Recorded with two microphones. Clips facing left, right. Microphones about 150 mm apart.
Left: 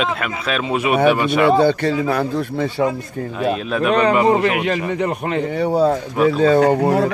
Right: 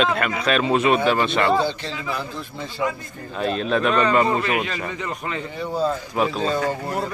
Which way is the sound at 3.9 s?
70° left (ahead or behind).